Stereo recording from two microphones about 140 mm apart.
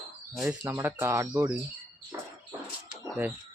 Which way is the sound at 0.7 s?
15° right (ahead or behind).